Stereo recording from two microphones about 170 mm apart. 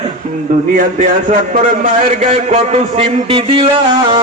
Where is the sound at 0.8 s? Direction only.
50° right (ahead or behind); by 3.7 s 30° right (ahead or behind).